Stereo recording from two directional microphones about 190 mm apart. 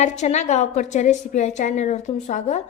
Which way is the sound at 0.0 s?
40° left (ahead or behind).